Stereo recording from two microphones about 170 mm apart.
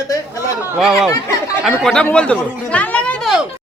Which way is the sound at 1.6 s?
Centre (ahead or behind).